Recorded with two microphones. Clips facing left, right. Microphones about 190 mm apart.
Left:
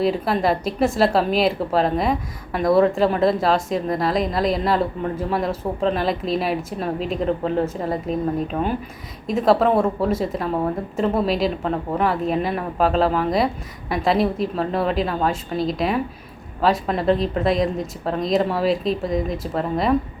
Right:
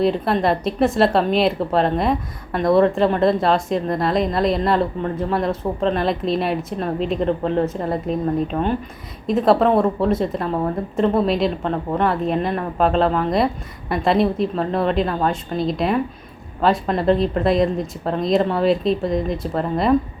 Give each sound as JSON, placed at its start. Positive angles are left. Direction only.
{"t": 0.0, "sound": "a woman's voice", "side_deg": 5}